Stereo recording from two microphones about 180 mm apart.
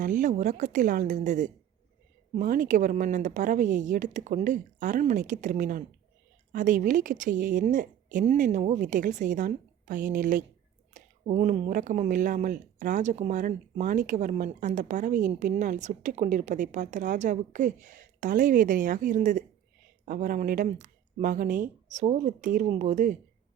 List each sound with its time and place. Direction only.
0.0 s speech: 45° right (ahead or behind)